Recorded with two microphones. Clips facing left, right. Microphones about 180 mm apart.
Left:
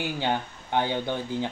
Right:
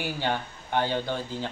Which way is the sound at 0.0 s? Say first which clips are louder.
Left 1 dB; 15° left (ahead or behind).